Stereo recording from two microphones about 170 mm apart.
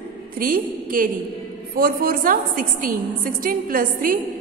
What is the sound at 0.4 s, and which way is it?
A woman's voice, 55° right (ahead or behind).